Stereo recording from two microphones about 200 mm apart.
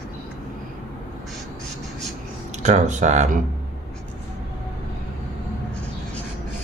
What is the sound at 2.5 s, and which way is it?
Speech, 35° right (ahead or behind).